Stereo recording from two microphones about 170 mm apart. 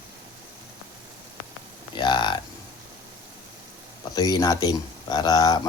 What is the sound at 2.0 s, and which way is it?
Speech, 25° left (ahead or behind).